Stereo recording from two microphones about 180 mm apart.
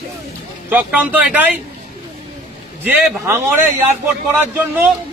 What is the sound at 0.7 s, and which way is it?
Speech, 10° right (ahead or behind).